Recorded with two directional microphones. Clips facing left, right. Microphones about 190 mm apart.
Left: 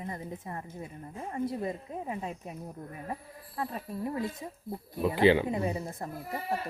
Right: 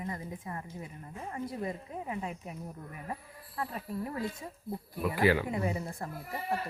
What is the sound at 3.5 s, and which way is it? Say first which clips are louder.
Speech: left 1 dB; 20° left (ahead or behind).